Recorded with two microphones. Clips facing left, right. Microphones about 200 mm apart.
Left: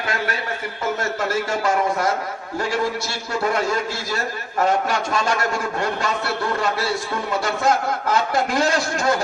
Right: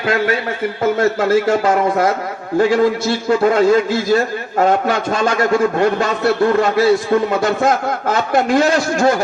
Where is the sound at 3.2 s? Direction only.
50° right (ahead or behind).